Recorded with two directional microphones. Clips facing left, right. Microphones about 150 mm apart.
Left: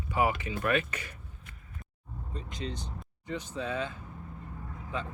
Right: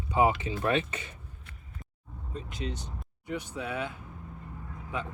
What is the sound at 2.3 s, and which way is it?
Speech, 10° right (ahead or behind).